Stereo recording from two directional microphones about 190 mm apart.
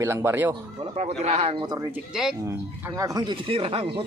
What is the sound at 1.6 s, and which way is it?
Speech, 15° right (ahead or behind).